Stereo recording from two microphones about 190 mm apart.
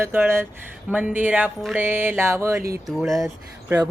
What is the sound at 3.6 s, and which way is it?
Speech, 15° right (ahead or behind).